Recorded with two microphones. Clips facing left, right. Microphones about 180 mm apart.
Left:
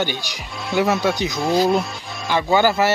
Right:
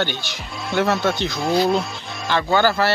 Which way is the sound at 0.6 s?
Centre (ahead or behind).